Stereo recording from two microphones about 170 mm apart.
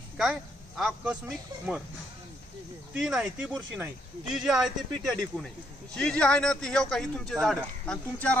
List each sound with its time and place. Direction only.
0.2 s speech: centre (ahead or behind)
2.9 s speech: 5° right (ahead or behind)